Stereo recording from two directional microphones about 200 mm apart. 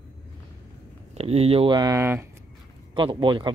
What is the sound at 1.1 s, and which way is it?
Speech, 30° right (ahead or behind).